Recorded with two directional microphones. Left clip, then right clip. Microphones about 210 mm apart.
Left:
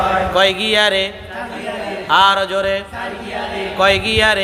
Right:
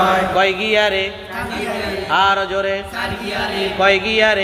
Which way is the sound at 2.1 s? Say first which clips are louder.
Left 3 dB; 20° left (ahead or behind).